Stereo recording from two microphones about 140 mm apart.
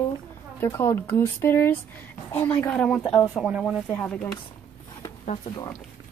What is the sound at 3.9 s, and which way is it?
Speech, 10° left (ahead or behind).